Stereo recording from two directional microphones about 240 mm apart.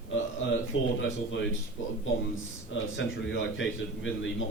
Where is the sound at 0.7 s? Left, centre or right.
Left.